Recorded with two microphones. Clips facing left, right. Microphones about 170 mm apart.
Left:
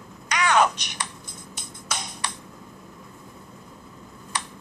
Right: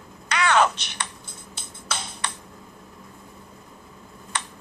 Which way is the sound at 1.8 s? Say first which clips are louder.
Right 1 dB; 15° left (ahead or behind).